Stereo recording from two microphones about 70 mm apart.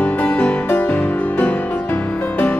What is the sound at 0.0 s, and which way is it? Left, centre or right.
Music, left.